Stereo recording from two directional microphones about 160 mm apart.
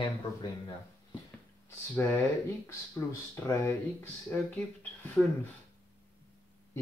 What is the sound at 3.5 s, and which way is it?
Speech, 15° left (ahead or behind).